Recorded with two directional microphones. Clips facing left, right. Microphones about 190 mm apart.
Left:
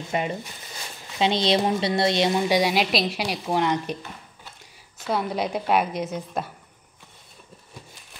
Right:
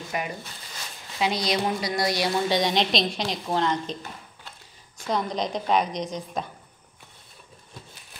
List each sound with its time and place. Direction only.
0.1 s a woman's voice: 25° left (ahead or behind)
5.0 s a woman's voice: 5° left (ahead or behind)